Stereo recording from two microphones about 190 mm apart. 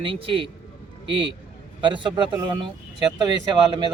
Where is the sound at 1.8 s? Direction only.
25° right (ahead or behind).